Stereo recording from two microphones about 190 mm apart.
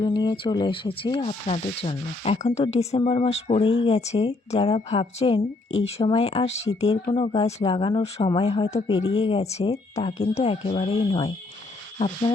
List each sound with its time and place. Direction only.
0.0 s speech: 25° left (ahead or behind)